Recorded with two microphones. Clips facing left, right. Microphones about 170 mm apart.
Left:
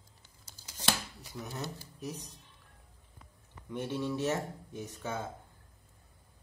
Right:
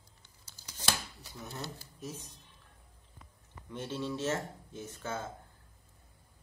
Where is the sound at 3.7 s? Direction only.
15° left (ahead or behind).